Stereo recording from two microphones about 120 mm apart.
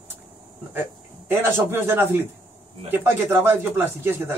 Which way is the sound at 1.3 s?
20° right (ahead or behind).